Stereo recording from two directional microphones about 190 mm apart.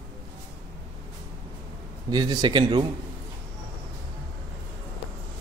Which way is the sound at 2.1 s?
25° right (ahead or behind).